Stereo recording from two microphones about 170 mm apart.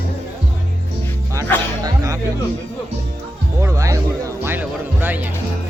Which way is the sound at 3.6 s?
20° right (ahead or behind).